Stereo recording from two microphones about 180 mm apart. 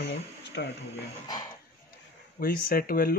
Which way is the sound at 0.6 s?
75° left (ahead or behind).